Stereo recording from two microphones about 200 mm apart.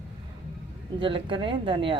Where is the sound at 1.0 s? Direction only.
25° right (ahead or behind).